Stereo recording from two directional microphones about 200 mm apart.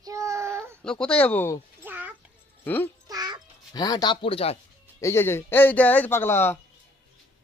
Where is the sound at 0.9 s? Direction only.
5° left (ahead or behind).